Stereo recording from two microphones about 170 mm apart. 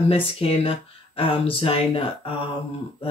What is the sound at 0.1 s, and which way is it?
Speech, 35° left (ahead or behind).